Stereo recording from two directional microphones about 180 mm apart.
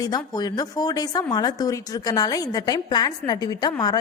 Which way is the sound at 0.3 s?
20° left (ahead or behind).